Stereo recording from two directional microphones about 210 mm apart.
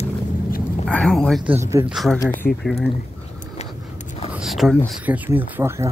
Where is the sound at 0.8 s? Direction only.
5° left (ahead or behind).